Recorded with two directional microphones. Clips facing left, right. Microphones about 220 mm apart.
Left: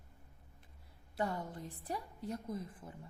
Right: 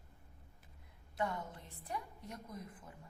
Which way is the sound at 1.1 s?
35° left (ahead or behind).